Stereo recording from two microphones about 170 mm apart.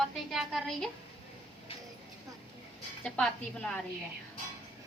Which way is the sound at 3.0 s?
5° left (ahead or behind).